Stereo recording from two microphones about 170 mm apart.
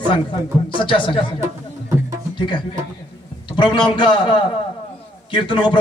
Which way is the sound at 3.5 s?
25° left (ahead or behind).